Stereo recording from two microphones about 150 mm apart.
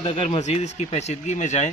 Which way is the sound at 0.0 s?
40° left (ahead or behind).